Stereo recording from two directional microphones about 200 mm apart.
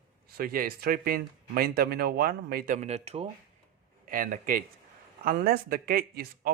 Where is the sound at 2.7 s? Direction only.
30° right (ahead or behind).